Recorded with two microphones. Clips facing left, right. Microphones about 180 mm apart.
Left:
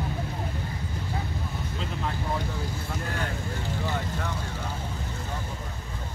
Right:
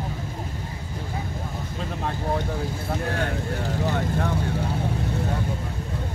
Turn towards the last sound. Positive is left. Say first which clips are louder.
# right 6 dB
turn(degrees=-50)  # may be behind; listen again after turning